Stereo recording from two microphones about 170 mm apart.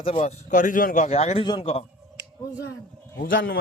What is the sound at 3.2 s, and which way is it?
Speech, 90° left.